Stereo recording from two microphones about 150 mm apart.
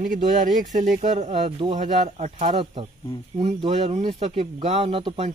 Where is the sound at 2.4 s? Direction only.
35° right (ahead or behind).